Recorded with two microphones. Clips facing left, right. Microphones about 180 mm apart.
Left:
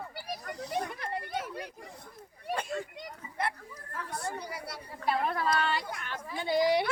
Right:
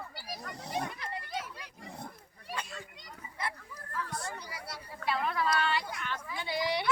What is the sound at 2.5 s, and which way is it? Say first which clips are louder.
Children playing: left 7 dB; 50° left (ahead or behind).